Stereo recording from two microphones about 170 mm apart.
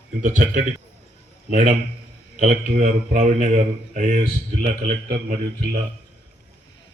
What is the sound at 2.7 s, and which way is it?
Speech, 45° right (ahead or behind).